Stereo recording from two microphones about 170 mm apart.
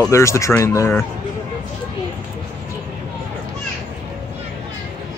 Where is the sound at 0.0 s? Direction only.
15° left (ahead or behind).